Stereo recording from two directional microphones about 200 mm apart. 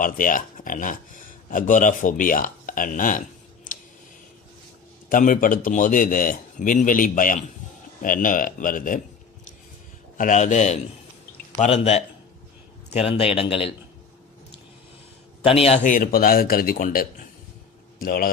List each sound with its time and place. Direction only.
0.0 s speech: 40° left (ahead or behind)
5.1 s a man's voice: 45° left (ahead or behind)
10.1 s a man's voice: 40° left (ahead or behind)
15.4 s a man's voice: 30° left (ahead or behind); by 18.3 s 45° left (ahead or behind)